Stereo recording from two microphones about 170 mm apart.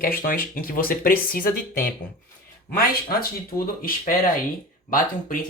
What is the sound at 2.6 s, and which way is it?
Speech, 60° left (ahead or behind).